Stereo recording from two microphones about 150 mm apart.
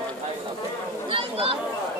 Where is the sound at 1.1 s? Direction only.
35° right (ahead or behind).